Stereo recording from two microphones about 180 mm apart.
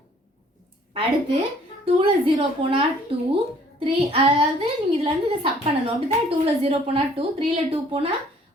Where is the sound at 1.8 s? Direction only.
30° right (ahead or behind).